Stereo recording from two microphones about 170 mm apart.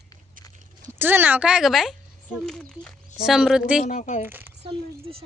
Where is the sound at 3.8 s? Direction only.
50° left (ahead or behind).